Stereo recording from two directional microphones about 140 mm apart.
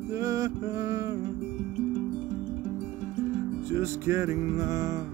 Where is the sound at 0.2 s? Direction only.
25° right (ahead or behind).